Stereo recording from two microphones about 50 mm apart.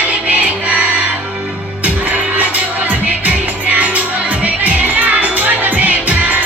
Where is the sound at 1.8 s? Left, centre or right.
Right.